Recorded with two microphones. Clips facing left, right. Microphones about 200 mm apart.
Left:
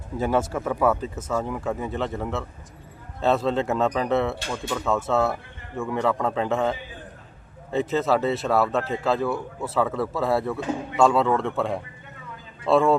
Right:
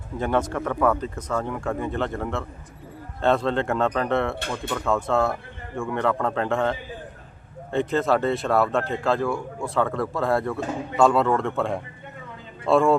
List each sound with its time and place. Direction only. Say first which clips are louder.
0.2 s speech: even; 5° left (ahead or behind)